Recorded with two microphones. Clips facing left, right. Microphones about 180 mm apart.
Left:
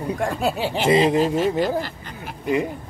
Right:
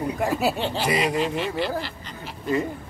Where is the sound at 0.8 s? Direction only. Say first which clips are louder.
Left 8 dB; 25° left (ahead or behind).